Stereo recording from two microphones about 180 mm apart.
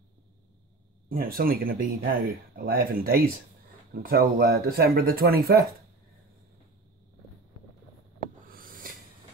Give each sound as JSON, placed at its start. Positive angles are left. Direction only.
{"t": 1.0, "sound": "speech", "side_deg": -55}
{"t": 8.5, "sound": "owl", "side_deg": -50}